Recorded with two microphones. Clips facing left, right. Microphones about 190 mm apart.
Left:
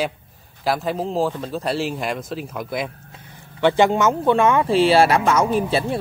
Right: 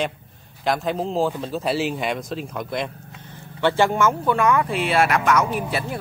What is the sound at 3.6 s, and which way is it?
Speech, 15° left (ahead or behind).